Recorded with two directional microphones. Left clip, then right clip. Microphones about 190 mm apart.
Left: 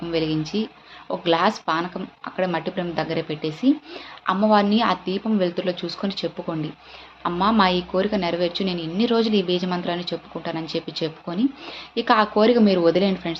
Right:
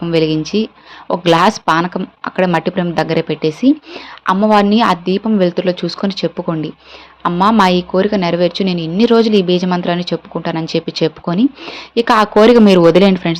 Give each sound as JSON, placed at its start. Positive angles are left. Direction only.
{"t": 0.0, "sound": "speech", "side_deg": -40}